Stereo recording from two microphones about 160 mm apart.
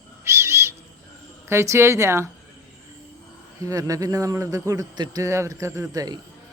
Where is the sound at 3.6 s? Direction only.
20° right (ahead or behind).